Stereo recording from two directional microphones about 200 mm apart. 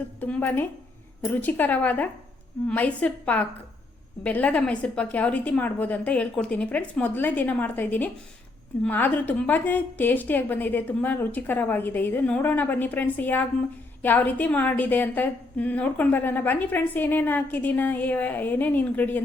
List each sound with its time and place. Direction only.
0.2 s a woman's voice: 10° left (ahead or behind)